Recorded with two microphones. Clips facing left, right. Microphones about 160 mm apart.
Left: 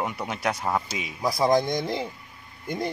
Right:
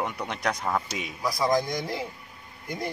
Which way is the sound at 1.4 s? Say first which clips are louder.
Left 3 dB; 25° left (ahead or behind).